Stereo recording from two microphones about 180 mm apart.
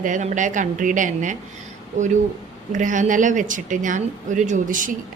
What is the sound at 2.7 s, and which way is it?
Speech, 45° right (ahead or behind).